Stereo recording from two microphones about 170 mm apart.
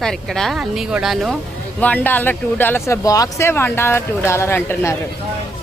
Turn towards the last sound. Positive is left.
turn(degrees=15)  # may be behind; listen again after turning